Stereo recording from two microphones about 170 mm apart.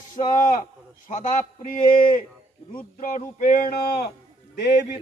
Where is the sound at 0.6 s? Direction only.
50° left (ahead or behind).